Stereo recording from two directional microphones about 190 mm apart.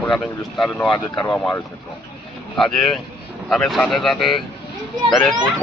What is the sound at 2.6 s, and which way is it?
A man's voice, centre (ahead or behind).